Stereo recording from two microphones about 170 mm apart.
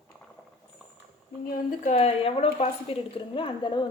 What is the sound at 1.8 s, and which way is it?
A woman's voice, 40° left (ahead or behind).